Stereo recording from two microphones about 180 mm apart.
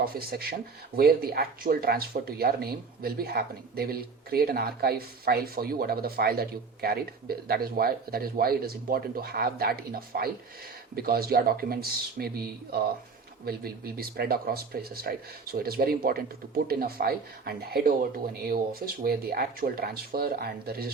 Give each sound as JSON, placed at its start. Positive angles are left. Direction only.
{"t": 0.0, "sound": "speech", "side_deg": -60}